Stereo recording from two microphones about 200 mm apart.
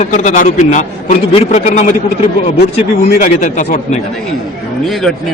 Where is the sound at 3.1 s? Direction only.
40° left (ahead or behind).